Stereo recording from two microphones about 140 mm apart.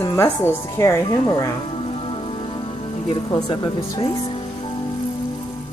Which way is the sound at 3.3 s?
25° left (ahead or behind).